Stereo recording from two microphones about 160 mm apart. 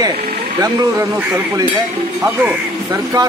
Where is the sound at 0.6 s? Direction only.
20° right (ahead or behind).